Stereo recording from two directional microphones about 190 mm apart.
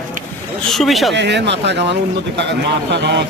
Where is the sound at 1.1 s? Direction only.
65° right (ahead or behind).